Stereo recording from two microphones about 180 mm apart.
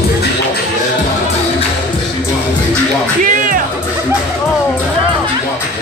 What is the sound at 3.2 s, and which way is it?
Music, 50° right (ahead or behind).